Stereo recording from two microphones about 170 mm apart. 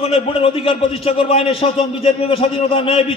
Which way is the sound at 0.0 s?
35° left (ahead or behind).